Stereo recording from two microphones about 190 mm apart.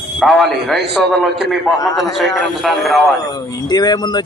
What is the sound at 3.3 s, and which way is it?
Speech, 20° left (ahead or behind).